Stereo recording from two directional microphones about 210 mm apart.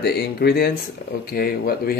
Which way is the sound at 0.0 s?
50° left (ahead or behind).